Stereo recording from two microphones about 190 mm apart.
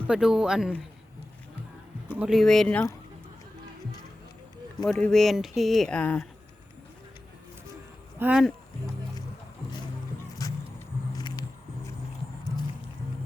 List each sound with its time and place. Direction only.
0.1 s speech: 5° right (ahead or behind)
2.1 s speech: centre (ahead or behind)
4.9 s speech: 5° left (ahead or behind)
8.2 s speech: 5° right (ahead or behind)
10.4 s vehicle: 20° left (ahead or behind)